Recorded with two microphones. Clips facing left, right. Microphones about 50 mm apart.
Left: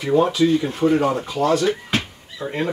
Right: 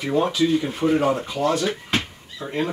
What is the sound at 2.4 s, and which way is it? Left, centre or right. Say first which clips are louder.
Speech: left 4 dB; centre.